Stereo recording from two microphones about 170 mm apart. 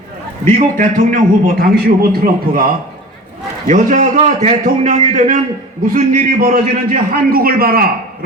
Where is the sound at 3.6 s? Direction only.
45° right (ahead or behind).